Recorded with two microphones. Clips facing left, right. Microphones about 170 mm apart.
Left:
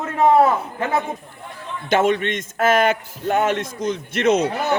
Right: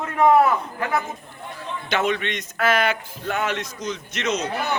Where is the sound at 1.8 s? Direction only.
45° left (ahead or behind).